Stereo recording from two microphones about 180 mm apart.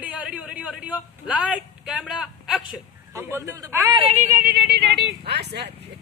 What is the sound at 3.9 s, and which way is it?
Speech, 35° right (ahead or behind).